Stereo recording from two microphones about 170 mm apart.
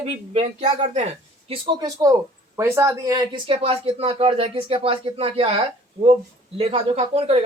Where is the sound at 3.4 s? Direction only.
35° right (ahead or behind).